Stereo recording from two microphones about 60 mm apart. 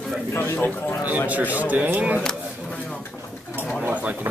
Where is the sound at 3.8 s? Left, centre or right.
Right.